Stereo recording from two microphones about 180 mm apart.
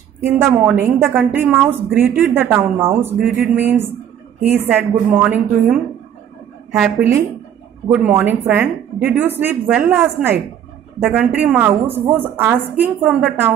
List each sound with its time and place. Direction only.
0.2 s a woman's voice: 15° right (ahead or behind)